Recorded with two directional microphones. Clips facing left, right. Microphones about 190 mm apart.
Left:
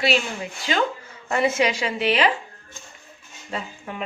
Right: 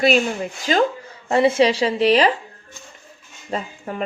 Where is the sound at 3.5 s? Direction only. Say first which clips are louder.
Right 5 dB; 40° right (ahead or behind).